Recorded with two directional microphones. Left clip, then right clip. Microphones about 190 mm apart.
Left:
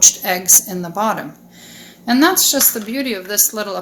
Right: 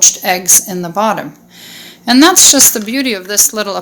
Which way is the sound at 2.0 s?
45° right (ahead or behind).